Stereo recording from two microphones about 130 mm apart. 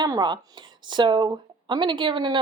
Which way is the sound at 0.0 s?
35° right (ahead or behind).